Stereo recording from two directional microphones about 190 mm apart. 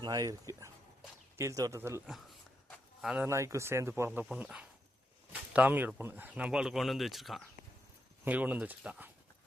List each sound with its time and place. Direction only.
0.0 s speech: 20° right (ahead or behind)
2.6 s a sound: 5° right (ahead or behind)
3.2 s speech: 15° right (ahead or behind)